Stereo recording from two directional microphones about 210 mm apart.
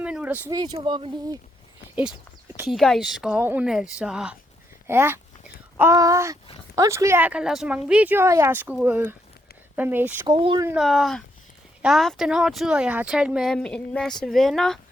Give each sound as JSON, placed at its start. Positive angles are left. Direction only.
{"t": 0.0, "sound": "speech", "side_deg": -5}
{"t": 0.6, "sound": "speech", "side_deg": -20}
{"t": 2.6, "sound": "speech", "side_deg": 0}
{"t": 10.2, "sound": "speech", "side_deg": -25}
{"t": 10.7, "sound": "speech", "side_deg": 0}